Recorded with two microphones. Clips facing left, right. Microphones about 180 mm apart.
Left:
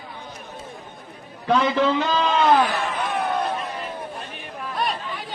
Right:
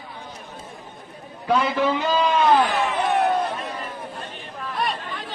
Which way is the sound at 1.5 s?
10° right (ahead or behind).